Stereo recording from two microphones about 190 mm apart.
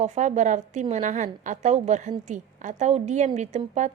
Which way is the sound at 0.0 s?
35° right (ahead or behind).